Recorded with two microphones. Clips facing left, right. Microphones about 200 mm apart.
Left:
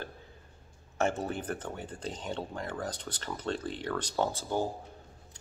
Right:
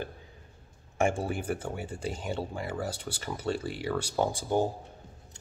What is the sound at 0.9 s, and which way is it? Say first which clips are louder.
Speech: right 2 dB; 10° right (ahead or behind).